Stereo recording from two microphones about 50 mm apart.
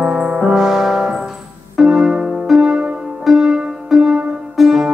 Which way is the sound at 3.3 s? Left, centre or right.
Centre.